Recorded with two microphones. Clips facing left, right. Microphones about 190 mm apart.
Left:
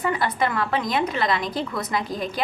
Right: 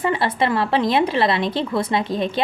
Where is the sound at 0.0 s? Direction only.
30° right (ahead or behind).